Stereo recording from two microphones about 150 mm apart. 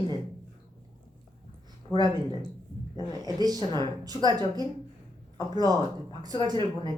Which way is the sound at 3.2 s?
25° right (ahead or behind).